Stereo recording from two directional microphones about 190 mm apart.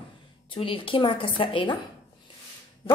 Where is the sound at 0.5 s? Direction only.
25° left (ahead or behind).